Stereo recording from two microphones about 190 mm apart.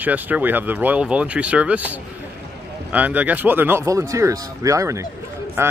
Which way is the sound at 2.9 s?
10° right (ahead or behind).